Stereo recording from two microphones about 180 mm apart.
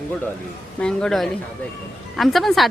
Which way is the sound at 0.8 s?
5° left (ahead or behind).